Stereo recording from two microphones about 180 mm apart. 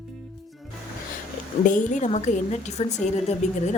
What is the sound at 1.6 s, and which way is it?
A woman's voice, 45° left (ahead or behind).